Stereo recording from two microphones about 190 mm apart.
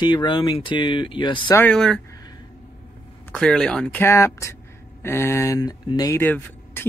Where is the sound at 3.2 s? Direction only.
5° left (ahead or behind).